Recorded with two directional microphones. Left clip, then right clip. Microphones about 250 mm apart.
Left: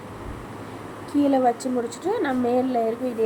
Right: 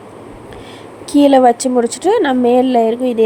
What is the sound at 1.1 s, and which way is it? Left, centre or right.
A woman's voice, right.